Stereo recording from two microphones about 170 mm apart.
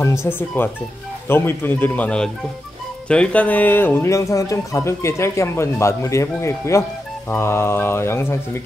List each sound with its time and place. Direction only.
0.0 s speech: 15° left (ahead or behind)